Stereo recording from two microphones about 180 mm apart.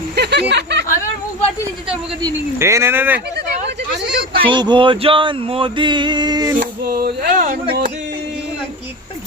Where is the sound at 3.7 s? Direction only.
65° right (ahead or behind).